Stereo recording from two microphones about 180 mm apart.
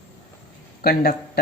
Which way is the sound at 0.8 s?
55° left (ahead or behind).